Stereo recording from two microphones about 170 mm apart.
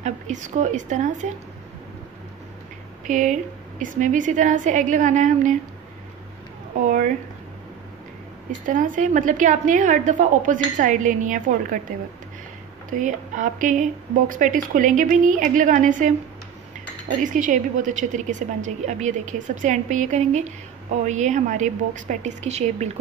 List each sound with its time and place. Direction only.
0.0 s a woman's voice: 45° right (ahead or behind)
3.1 s a woman's voice: 50° right (ahead or behind)
6.8 s a woman's voice: 50° right (ahead or behind)
8.6 s a woman's voice: 50° right (ahead or behind)
12.9 s a woman's voice: 50° right (ahead or behind)
17.2 s a woman's voice: 50° right (ahead or behind)